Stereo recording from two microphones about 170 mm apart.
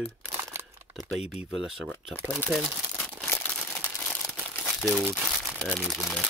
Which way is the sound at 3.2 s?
10° left (ahead or behind).